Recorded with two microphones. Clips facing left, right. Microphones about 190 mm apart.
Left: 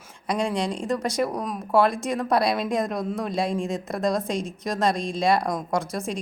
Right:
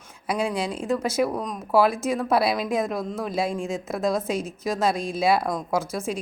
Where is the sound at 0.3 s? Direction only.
5° right (ahead or behind).